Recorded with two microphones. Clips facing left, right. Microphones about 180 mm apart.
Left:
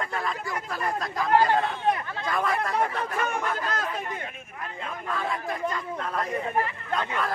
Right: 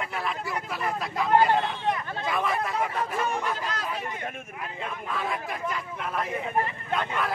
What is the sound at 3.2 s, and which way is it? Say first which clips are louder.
Speech: even; 60° left (ahead or behind).